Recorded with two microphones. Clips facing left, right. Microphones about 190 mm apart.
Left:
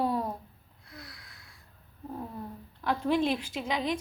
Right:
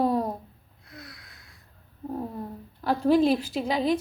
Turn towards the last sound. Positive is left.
turn(degrees=-35)  # may be behind; listen again after turning